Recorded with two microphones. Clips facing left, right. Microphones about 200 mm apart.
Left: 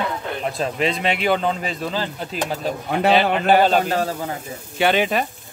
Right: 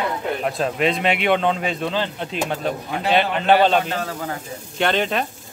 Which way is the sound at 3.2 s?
5° left (ahead or behind).